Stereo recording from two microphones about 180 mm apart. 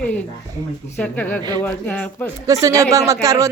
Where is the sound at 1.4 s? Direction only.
25° right (ahead or behind).